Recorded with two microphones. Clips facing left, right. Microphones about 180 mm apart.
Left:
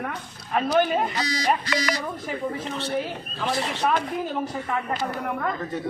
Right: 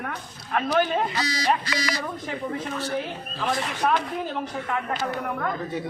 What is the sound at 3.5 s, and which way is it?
Speech, 30° left (ahead or behind).